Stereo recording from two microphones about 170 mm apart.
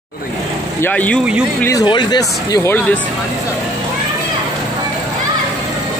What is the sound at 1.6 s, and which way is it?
Speech, 20° left (ahead or behind).